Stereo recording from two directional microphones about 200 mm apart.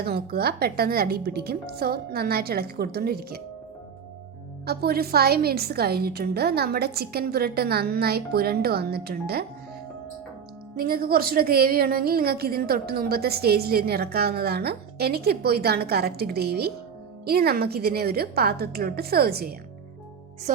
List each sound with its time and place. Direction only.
0.0 s a woman's voice: 50° right (ahead or behind)
4.6 s a woman's voice: 50° right (ahead or behind)
10.8 s a woman's voice: 50° right (ahead or behind)